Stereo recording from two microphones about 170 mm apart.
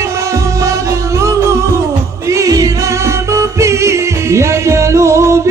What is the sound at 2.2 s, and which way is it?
Music, 20° right (ahead or behind).